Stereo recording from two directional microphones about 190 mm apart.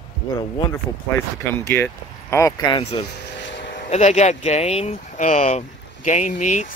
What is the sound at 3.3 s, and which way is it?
Vehicle, 70° left (ahead or behind).